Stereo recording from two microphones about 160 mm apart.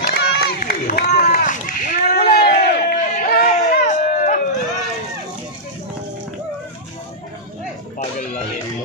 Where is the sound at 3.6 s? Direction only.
50° left (ahead or behind).